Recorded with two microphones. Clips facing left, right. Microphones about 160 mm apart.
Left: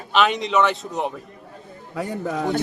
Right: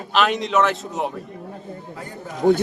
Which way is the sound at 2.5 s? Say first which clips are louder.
Right 9 dB; 50° right (ahead or behind).